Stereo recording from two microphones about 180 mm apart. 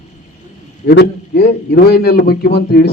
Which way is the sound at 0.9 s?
60° left (ahead or behind).